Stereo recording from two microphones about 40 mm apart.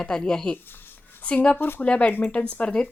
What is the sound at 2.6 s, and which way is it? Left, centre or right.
Speech, left.